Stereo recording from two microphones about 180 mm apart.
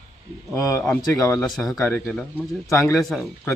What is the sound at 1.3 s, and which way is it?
A man's voice, centre (ahead or behind).